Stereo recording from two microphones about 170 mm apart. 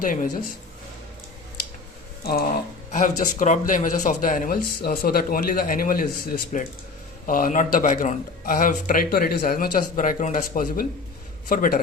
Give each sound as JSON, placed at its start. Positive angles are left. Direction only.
{"t": 0.0, "sound": "speech", "side_deg": 50}
{"t": 2.2, "sound": "a man's voice", "side_deg": 65}
{"t": 2.9, "sound": "a man's voice", "side_deg": 50}